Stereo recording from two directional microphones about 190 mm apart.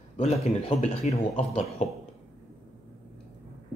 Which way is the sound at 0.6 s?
35° left (ahead or behind).